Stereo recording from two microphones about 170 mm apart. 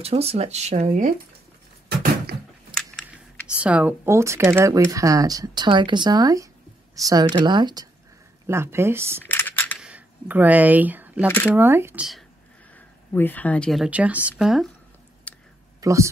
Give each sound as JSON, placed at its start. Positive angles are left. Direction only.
{"t": 0.0, "sound": "speech", "side_deg": -35}
{"t": 2.7, "sound": "a sound", "side_deg": 5}
{"t": 3.6, "sound": "speech", "side_deg": -10}
{"t": 9.2, "sound": "coin", "side_deg": 10}
{"t": 9.8, "sound": "a sound", "side_deg": -5}
{"t": 11.2, "sound": "speech", "side_deg": 10}
{"t": 11.5, "sound": "speech", "side_deg": -15}
{"t": 12.7, "sound": "a woman's voice", "side_deg": 10}
{"t": 15.3, "sound": "a sound", "side_deg": 10}
{"t": 15.8, "sound": "speech", "side_deg": -20}